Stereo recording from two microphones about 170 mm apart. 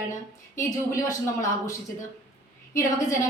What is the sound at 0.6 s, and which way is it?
Speech, 20° left (ahead or behind).